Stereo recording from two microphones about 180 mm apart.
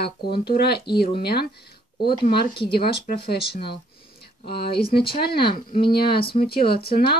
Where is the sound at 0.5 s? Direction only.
65° left (ahead or behind).